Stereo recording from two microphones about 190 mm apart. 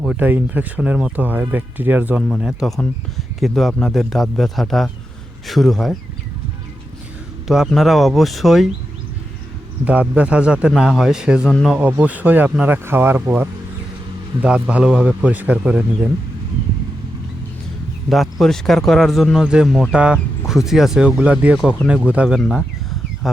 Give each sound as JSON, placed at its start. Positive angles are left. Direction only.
{"t": 0.0, "sound": "a man's voice", "side_deg": -5}
{"t": 7.4, "sound": "speech", "side_deg": 0}
{"t": 9.8, "sound": "a man's voice", "side_deg": -5}
{"t": 18.1, "sound": "speech", "side_deg": 0}